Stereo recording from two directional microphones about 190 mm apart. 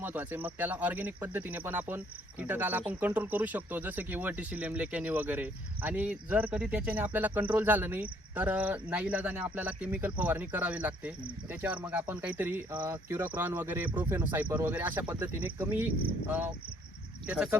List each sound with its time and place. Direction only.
0.0 s speech: 10° right (ahead or behind)
17.2 s speech: 5° right (ahead or behind)